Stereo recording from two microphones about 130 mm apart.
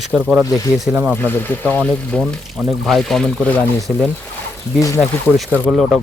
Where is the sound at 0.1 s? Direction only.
5° right (ahead or behind).